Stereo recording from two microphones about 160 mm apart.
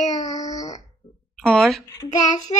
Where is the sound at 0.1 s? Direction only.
25° left (ahead or behind).